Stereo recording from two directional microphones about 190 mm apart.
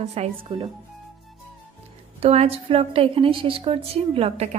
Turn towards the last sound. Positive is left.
turn(degrees=-30)  # may be behind; listen again after turning